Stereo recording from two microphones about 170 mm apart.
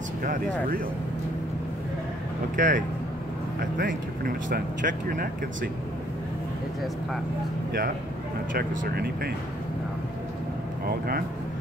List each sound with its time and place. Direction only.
2.5 s speech: 50° right (ahead or behind)
8.5 s speech: 65° right (ahead or behind)
10.9 s speech: 65° right (ahead or behind)